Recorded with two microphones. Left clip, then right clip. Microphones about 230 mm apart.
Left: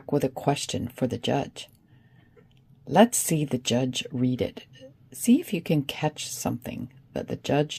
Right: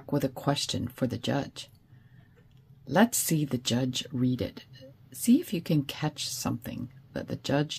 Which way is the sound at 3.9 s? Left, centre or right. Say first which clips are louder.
Left 3 dB; centre.